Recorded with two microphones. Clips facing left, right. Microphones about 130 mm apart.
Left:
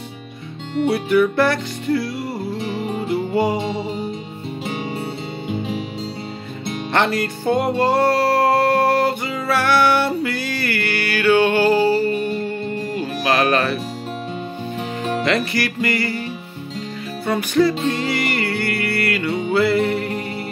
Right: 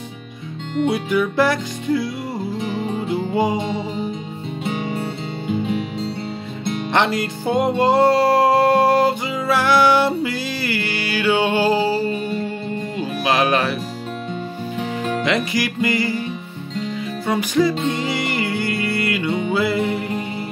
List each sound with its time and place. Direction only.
0.8 s music: 15° right (ahead or behind)
2.3 s music: centre (ahead or behind)
4.6 s music: 5° left (ahead or behind)
6.9 s music: 20° right (ahead or behind)
14.8 s music: 5° left (ahead or behind)
15.2 s music: 15° right (ahead or behind)
17.3 s music: 15° right (ahead or behind)